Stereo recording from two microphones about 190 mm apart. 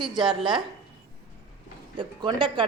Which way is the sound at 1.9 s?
25° right (ahead or behind).